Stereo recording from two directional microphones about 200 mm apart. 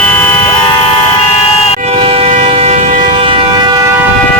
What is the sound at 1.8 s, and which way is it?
Train, 30° right (ahead or behind).